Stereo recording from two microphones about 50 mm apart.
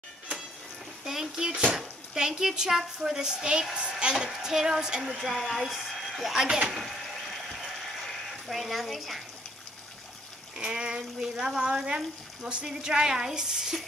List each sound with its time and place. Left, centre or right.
1.0 s a woman's voice: centre
6.3 s speech: centre
6.7 s a sound: centre
10.5 s speech: centre